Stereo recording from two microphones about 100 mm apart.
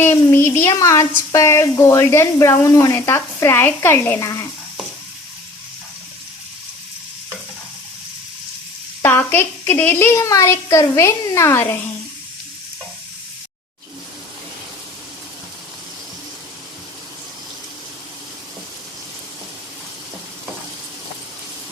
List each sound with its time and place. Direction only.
0.0 s frying: 25° left (ahead or behind)
9.0 s frying: 25° left (ahead or behind)